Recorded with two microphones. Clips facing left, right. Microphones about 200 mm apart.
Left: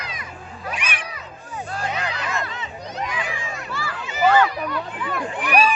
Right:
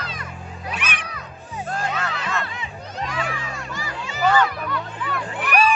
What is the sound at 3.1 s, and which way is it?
Crowd, 15° left (ahead or behind).